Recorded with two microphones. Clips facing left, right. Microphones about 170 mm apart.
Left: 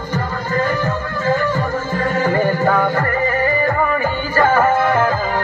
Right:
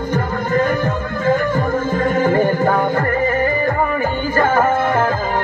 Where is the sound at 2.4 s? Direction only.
25° right (ahead or behind).